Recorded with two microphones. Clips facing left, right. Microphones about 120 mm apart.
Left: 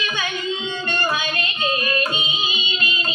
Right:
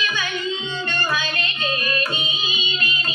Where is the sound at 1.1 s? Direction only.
20° left (ahead or behind).